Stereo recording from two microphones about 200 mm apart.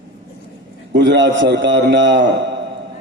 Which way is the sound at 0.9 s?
65° right (ahead or behind).